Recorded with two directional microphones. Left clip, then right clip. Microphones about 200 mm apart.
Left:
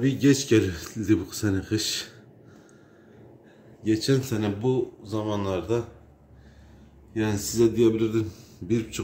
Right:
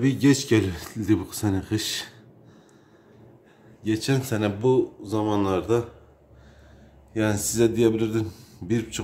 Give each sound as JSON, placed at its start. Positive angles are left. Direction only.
{"t": 0.0, "sound": "speech", "side_deg": -20}
{"t": 3.8, "sound": "speech", "side_deg": -15}
{"t": 7.2, "sound": "speech", "side_deg": -20}